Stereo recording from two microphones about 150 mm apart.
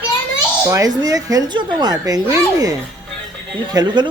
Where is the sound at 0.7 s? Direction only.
25° right (ahead or behind).